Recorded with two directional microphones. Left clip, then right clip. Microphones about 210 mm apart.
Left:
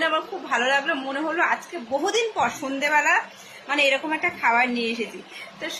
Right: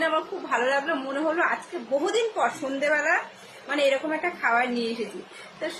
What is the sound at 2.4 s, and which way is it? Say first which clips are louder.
A woman's voice: left 2 dB; 10° right (ahead or behind).